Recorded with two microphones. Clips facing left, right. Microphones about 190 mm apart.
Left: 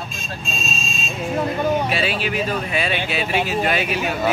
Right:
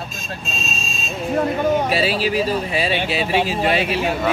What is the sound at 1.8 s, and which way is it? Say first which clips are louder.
Speech: right 3 dB; 35° right (ahead or behind).